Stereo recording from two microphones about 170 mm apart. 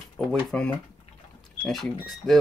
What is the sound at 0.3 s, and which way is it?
Speech, 5° left (ahead or behind).